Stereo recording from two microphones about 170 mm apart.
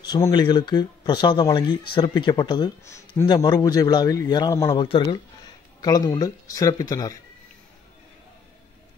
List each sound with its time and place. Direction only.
0.0 s speech: 25° left (ahead or behind)
4.8 s speech: 30° left (ahead or behind)